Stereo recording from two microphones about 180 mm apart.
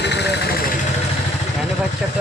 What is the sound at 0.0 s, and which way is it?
Vehicle, 70° left (ahead or behind).